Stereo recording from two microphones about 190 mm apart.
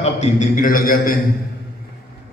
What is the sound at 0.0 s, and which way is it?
A man's voice, 35° left (ahead or behind).